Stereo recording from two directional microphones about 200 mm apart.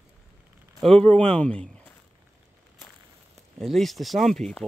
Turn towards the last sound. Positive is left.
turn(degrees=0)  # may be behind; listen again after turning